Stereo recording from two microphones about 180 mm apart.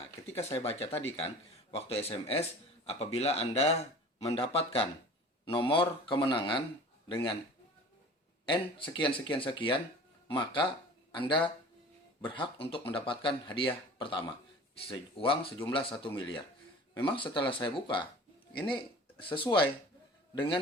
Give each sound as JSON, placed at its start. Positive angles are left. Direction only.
{"t": 0.2, "sound": "a sound", "side_deg": 15}
{"t": 0.5, "sound": "speech", "side_deg": 35}
{"t": 8.4, "sound": "speech", "side_deg": 25}